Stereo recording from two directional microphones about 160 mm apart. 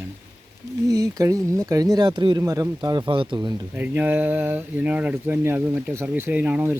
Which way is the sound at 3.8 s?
10° right (ahead or behind).